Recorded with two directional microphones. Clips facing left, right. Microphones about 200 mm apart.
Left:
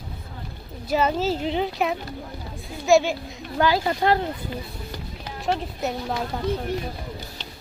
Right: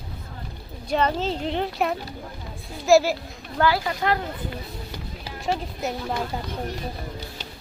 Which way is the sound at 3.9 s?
30° left (ahead or behind).